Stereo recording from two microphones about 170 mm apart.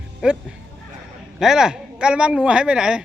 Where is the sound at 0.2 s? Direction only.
5° right (ahead or behind).